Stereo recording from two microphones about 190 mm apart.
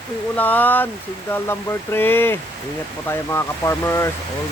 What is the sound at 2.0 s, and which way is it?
Speech, 10° left (ahead or behind).